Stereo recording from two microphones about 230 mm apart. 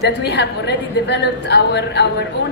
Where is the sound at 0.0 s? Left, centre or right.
Left.